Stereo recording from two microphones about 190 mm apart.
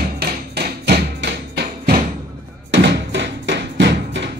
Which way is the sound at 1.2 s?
60° right (ahead or behind).